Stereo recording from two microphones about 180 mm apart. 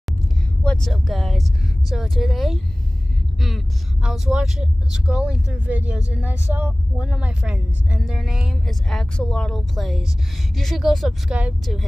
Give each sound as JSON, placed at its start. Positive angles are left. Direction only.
{"t": 0.7, "sound": "speech", "side_deg": 0}